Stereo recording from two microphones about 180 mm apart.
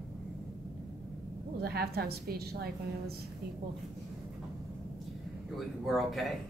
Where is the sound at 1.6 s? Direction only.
60° right (ahead or behind).